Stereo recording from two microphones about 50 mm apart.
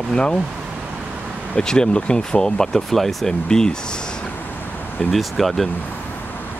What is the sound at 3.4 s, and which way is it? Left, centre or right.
Speech, centre.